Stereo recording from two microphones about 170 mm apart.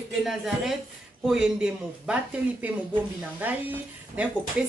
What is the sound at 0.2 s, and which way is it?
A woman's voice, centre (ahead or behind).